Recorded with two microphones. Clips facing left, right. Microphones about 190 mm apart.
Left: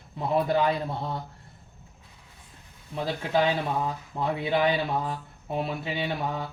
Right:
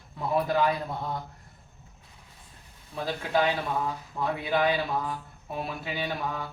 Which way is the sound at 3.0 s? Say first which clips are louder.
Left 1 dB; 25° left (ahead or behind).